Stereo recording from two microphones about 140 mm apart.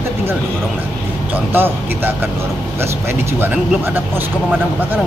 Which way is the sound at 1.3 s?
15° right (ahead or behind).